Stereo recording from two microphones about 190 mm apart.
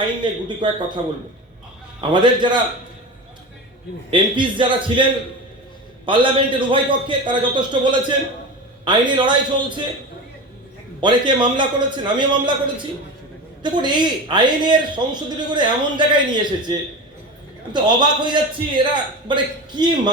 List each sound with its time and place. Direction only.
0.0 s a man's voice: 25° right (ahead or behind)
2.0 s a man's voice: 25° right (ahead or behind)
4.1 s a man's voice: 25° right (ahead or behind)
6.1 s a man's voice: 25° right (ahead or behind)
11.0 s a man's voice: 25° right (ahead or behind)
13.6 s a man's voice: 25° right (ahead or behind)